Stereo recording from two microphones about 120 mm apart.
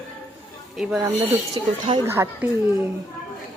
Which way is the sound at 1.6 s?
45° right (ahead or behind).